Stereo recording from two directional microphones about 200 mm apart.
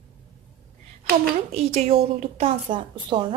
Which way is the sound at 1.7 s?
30° right (ahead or behind).